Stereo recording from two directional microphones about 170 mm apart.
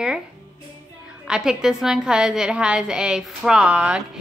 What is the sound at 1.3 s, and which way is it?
A woman's voice, 5° right (ahead or behind).